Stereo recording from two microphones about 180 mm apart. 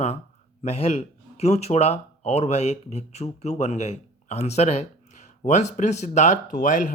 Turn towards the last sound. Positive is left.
turn(degrees=45)  # may be behind; listen again after turning